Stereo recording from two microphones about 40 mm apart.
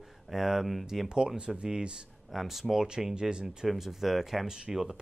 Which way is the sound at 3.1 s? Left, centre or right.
Right.